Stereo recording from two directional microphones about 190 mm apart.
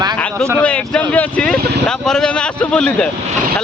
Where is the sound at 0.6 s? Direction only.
5° left (ahead or behind).